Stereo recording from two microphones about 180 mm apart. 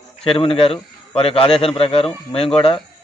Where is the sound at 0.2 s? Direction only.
30° left (ahead or behind).